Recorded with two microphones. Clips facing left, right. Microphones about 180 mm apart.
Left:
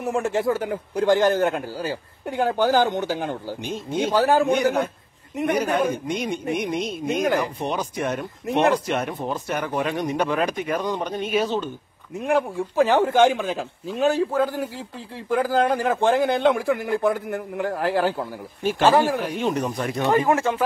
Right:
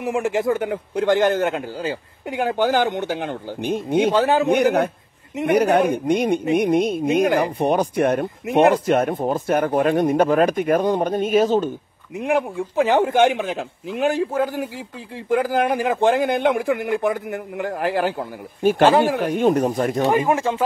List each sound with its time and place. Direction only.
0.0 s a man's voice: 15° right (ahead or behind)
3.0 s speech: 60° right (ahead or behind)
4.1 s speech: 20° right (ahead or behind)
4.5 s speech: 60° right (ahead or behind)
12.2 s a man's voice: 15° right (ahead or behind)
18.6 s speech: 50° right (ahead or behind)
20.1 s a man's voice: 15° right (ahead or behind)